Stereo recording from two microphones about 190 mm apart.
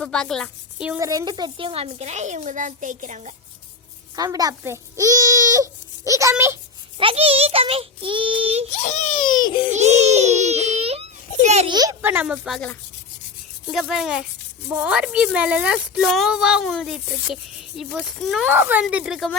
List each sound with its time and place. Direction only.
0.0 s speech: 5° left (ahead or behind)
0.9 s speech: 20° right (ahead or behind); by 3.3 s 40° right (ahead or behind)
4.1 s a child's voice: 20° right (ahead or behind)
7.0 s a child's voice: 30° right (ahead or behind)
8.8 s speech: 40° left (ahead or behind)
9.2 s speech: 25° left (ahead or behind)
9.7 s baby cry: 35° right (ahead or behind)
11.7 s a child's voice: 20° right (ahead or behind); by 18.5 s centre (ahead or behind)
18.5 s a child's voice: 10° right (ahead or behind)